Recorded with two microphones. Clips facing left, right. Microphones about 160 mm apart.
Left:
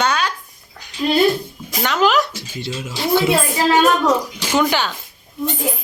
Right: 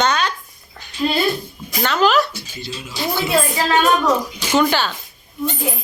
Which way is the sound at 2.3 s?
80° left.